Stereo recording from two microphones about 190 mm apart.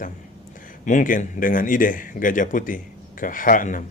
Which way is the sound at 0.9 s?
45° left (ahead or behind).